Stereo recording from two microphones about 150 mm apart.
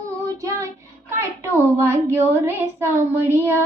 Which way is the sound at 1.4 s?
20° right (ahead or behind).